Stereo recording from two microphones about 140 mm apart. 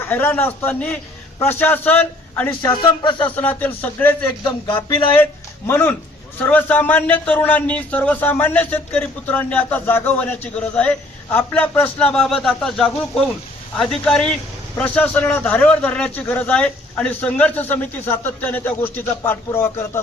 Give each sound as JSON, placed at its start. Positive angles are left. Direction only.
{"t": 0.0, "sound": "speech", "side_deg": 15}
{"t": 2.8, "sound": "speech", "side_deg": 35}
{"t": 3.2, "sound": "speech", "side_deg": 10}
{"t": 4.4, "sound": "speech", "side_deg": 35}
{"t": 5.2, "sound": "speech", "side_deg": 15}